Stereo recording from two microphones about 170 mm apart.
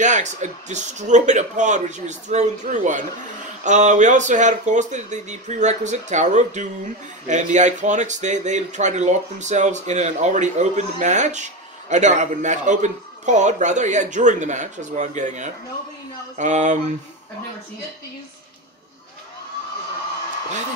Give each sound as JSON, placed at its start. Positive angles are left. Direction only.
{"t": 0.0, "sound": "speech", "side_deg": -45}